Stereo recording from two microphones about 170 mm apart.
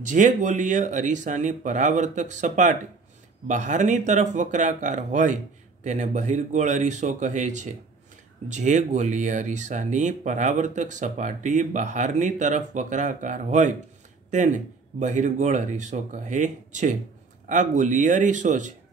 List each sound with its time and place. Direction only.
0.0 s speech: 45° right (ahead or behind)